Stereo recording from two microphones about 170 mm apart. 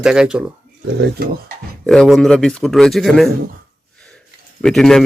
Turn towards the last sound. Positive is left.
turn(degrees=5)  # may be behind; listen again after turning